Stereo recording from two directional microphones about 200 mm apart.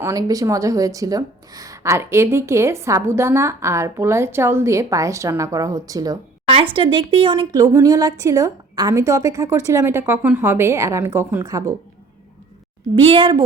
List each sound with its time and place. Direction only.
0.0 s speech: 15° right (ahead or behind)
13.0 s a woman's voice: 30° right (ahead or behind)